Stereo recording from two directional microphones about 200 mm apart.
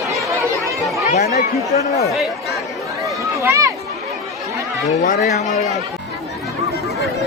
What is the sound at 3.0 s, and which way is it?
Run, 15° right (ahead or behind).